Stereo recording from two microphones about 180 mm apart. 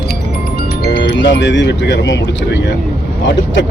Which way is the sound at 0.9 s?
75° left (ahead or behind).